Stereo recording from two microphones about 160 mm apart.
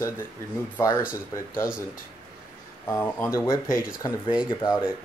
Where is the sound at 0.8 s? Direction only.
20° left (ahead or behind).